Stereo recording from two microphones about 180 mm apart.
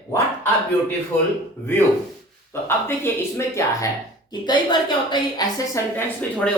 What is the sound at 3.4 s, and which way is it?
A woman's voice, 15° left (ahead or behind).